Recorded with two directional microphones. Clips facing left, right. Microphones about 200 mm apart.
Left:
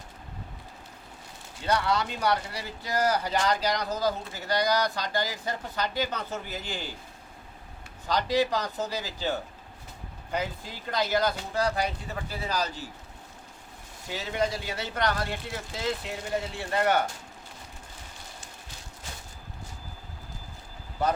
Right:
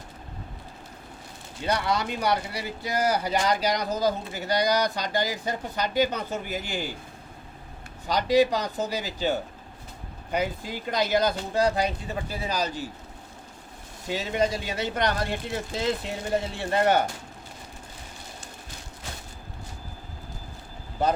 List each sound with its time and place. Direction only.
1.6 s speech: 15° right (ahead or behind)
8.0 s speech: 15° right (ahead or behind)
14.1 s speech: 20° right (ahead or behind)